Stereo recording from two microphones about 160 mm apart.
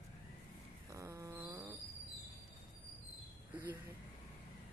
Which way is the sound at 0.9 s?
20° right (ahead or behind).